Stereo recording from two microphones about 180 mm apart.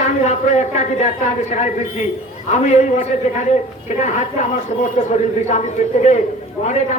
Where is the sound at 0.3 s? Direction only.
40° left (ahead or behind).